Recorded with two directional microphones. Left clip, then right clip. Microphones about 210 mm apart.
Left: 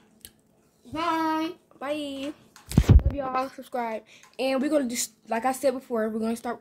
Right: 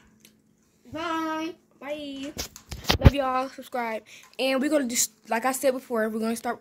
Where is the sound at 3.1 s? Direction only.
25° right (ahead or behind).